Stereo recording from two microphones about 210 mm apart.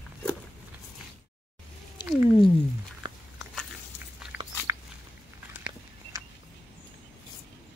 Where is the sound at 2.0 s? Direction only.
20° left (ahead or behind).